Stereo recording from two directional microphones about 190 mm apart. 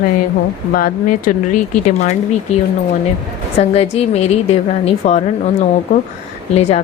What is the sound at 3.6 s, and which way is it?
Speech, 35° left (ahead or behind).